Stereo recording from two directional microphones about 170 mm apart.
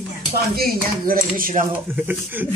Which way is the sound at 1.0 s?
55° right (ahead or behind).